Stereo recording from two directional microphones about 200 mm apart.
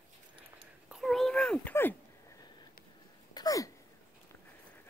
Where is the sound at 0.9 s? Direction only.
Centre (ahead or behind).